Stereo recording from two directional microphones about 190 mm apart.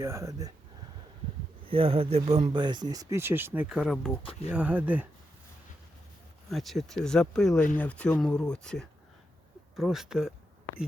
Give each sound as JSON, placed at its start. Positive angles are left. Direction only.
{"t": 0.0, "sound": "speech", "side_deg": -15}
{"t": 1.6, "sound": "speech", "side_deg": -30}
{"t": 6.5, "sound": "speech", "side_deg": 0}